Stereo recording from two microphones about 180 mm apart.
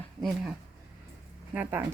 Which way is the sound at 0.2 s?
Centre (ahead or behind).